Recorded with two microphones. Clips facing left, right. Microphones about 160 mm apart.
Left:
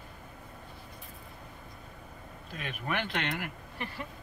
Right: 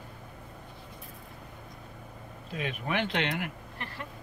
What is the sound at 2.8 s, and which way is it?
Speech, 20° right (ahead or behind).